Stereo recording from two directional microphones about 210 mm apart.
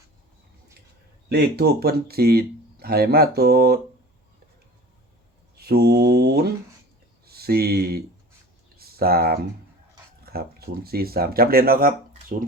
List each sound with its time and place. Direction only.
1.3 s speech: 50° right (ahead or behind)
5.5 s speech: 50° right (ahead or behind)
10.3 s a sound: 45° right (ahead or behind)
10.8 s speech: 45° right (ahead or behind)